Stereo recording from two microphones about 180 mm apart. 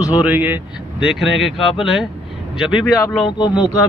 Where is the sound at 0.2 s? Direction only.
10° right (ahead or behind).